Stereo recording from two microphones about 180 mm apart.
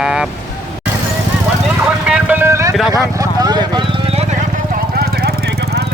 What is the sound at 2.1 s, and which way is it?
Speech, 10° right (ahead or behind).